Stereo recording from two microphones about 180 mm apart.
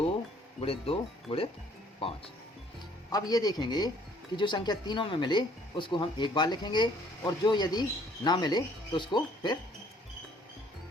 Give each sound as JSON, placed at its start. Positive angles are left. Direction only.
{"t": 0.6, "sound": "speech", "side_deg": 30}
{"t": 3.1, "sound": "speech", "side_deg": 20}